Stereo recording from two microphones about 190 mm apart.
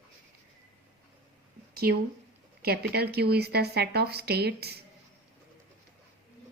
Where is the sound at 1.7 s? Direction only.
55° right (ahead or behind).